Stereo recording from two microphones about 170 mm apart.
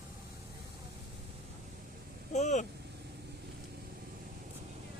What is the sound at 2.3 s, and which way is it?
Speech, 45° left (ahead or behind).